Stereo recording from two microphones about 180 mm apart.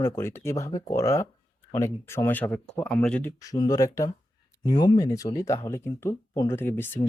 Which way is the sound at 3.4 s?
20° left (ahead or behind).